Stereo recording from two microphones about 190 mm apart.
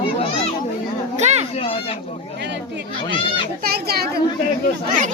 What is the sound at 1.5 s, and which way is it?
Speech, 30° left (ahead or behind).